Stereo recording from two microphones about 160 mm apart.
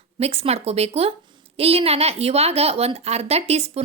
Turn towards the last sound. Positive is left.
turn(degrees=-40)  # may be behind; listen again after turning